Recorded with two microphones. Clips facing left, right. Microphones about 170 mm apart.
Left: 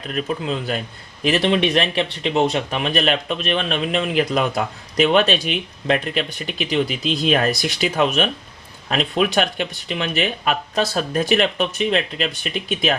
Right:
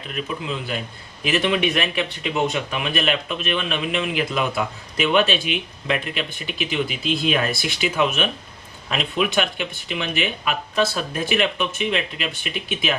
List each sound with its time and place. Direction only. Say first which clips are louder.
0.1 s speech: left 4 dB; 40° left (ahead or behind)